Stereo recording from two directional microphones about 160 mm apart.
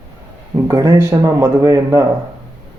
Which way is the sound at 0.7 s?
20° right (ahead or behind).